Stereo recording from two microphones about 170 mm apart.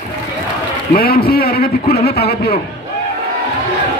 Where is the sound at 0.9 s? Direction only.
65° left (ahead or behind).